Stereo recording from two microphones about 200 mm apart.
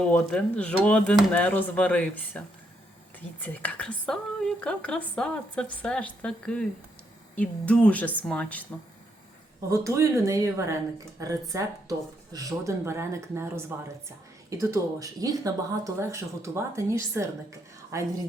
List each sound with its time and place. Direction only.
0.1 s speech: 5° left (ahead or behind)
3.4 s a woman's voice: 10° left (ahead or behind)
9.6 s speech: 15° right (ahead or behind)